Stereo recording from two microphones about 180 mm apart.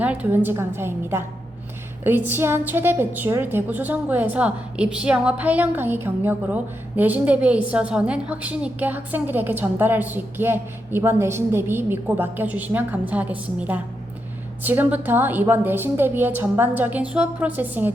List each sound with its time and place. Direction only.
0.0 s a woman's voice: 10° right (ahead or behind)